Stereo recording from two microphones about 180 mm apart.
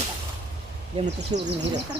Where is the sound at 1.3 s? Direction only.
25° right (ahead or behind).